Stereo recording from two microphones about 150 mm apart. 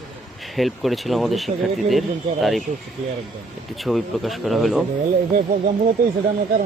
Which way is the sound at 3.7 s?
Centre (ahead or behind).